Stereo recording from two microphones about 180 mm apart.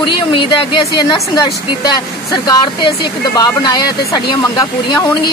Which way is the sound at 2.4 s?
25° left (ahead or behind).